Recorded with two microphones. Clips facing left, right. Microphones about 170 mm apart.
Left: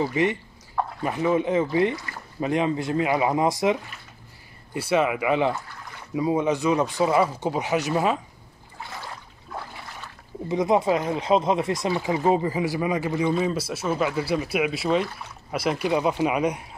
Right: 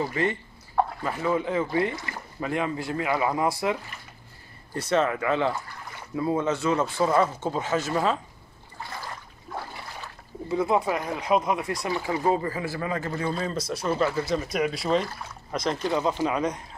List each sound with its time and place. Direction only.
0.0 s speech: 15° left (ahead or behind)
10.5 s speech: 20° left (ahead or behind)